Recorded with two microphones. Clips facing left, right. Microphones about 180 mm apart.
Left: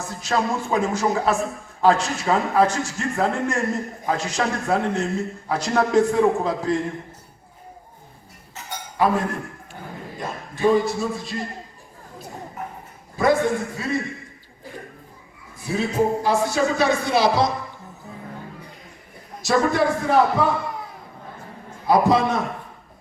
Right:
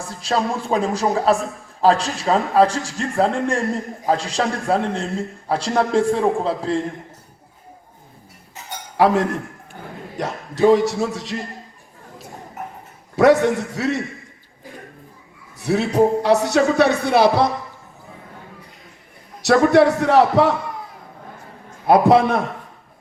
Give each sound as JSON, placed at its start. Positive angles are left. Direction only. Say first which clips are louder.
{"t": 0.0, "sound": "a man's voice", "louder": "right 2 dB", "side_deg": -30}
{"t": 9.0, "sound": "a man's voice", "louder": "right 4 dB", "side_deg": -80}
{"t": 13.1, "sound": "a man's voice", "louder": "right 5 dB", "side_deg": -80}
{"t": 15.5, "sound": "speech", "louder": "right 5 dB", "side_deg": -75}
{"t": 19.4, "sound": "speech", "louder": "right 6 dB", "side_deg": -75}
{"t": 21.8, "sound": "a man's voice", "louder": "right 4 dB", "side_deg": -60}